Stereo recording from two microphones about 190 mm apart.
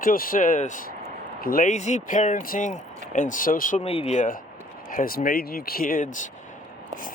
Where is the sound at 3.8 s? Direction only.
30° left (ahead or behind).